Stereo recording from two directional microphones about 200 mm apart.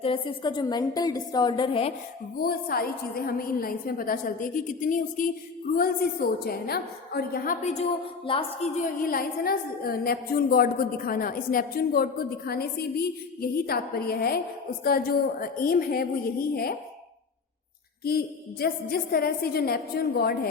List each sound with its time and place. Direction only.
0.0 s a woman's voice: 25° left (ahead or behind)
2.4 s a woman's voice: 50° left (ahead or behind); by 8.7 s 25° left (ahead or behind)
8.8 s a woman's voice: 45° left (ahead or behind)
18.0 s a woman's voice: 50° left (ahead or behind)